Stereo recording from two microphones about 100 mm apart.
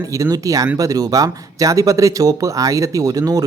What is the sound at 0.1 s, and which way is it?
Speech, 35° right (ahead or behind).